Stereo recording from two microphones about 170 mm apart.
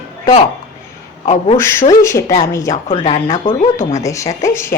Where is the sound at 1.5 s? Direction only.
15° left (ahead or behind).